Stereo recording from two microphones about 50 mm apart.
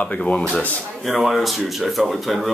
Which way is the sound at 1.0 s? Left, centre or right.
Centre.